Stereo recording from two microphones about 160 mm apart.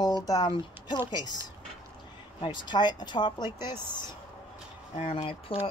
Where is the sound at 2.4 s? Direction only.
30° left (ahead or behind).